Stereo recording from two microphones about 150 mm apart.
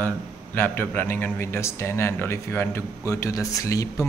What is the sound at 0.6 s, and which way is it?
A man's voice, 15° left (ahead or behind).